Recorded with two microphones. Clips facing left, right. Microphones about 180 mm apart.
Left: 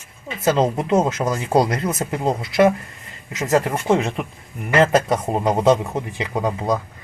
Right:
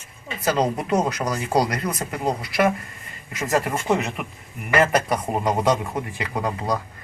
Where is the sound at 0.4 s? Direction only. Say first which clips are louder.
Left 4 dB; 25° left (ahead or behind).